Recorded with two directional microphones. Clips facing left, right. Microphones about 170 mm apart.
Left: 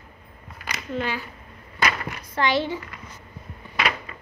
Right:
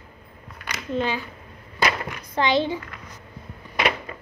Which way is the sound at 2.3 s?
20° right (ahead or behind).